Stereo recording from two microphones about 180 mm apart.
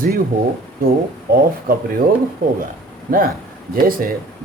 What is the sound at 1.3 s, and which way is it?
Speech, 60° right (ahead or behind).